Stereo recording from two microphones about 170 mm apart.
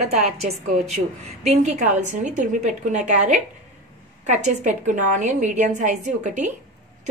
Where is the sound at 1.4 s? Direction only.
45° right (ahead or behind).